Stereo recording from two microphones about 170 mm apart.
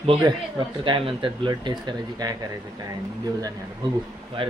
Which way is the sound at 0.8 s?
30° right (ahead or behind).